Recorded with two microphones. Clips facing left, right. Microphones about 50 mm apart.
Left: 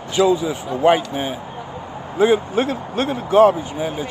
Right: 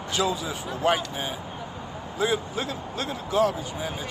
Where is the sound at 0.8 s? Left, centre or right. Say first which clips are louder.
Left 9 dB; left.